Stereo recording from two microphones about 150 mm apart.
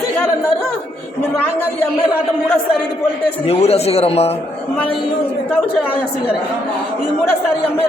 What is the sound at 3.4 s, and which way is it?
Speech, 40° left (ahead or behind).